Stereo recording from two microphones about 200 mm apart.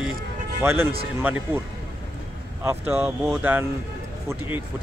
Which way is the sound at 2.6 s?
10° right (ahead or behind).